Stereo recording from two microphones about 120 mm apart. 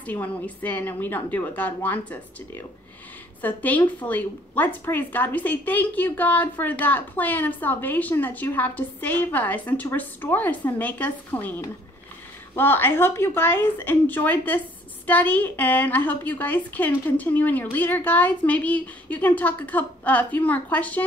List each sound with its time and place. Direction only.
0.0 s a woman's voice: 15° left (ahead or behind)